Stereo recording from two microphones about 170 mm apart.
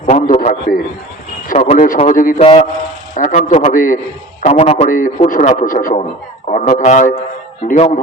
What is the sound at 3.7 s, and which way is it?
Speech, 55° left (ahead or behind).